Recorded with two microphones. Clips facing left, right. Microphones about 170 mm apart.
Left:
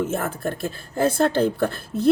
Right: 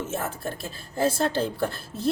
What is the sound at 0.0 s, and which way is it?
A woman's voice, 55° left (ahead or behind).